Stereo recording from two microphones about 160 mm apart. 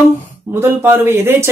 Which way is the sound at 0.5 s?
15° right (ahead or behind).